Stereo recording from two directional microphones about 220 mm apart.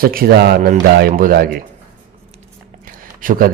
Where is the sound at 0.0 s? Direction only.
40° right (ahead or behind).